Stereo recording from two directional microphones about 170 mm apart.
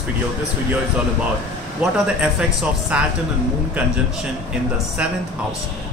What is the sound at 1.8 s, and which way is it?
A man's voice, 5° right (ahead or behind).